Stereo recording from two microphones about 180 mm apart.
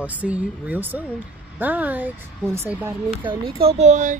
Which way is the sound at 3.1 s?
25° right (ahead or behind).